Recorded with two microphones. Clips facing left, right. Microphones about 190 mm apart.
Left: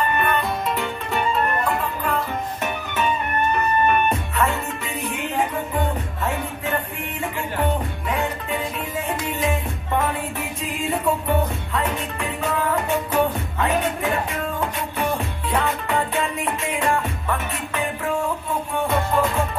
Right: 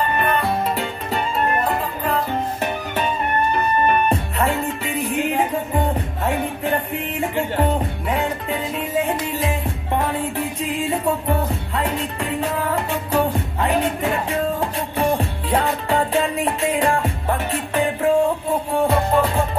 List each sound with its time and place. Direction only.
0.2 s music: 30° right (ahead or behind)
11.7 s music: 35° right (ahead or behind)